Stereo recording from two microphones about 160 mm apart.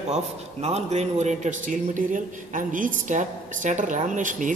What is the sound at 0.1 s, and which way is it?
A man's voice, 40° right (ahead or behind).